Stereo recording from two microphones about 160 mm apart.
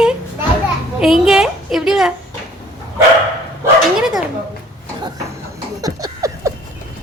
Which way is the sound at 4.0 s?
5° right (ahead or behind).